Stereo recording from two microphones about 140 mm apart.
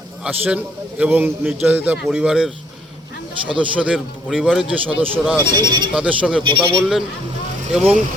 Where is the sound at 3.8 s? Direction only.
5° right (ahead or behind).